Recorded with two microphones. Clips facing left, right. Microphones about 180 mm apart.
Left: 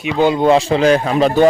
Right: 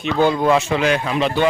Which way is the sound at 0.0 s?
15° left (ahead or behind).